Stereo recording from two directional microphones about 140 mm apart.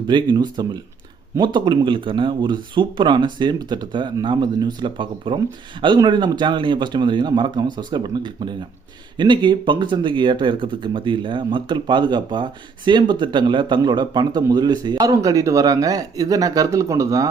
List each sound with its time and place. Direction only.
0.1 s speech: 30° right (ahead or behind)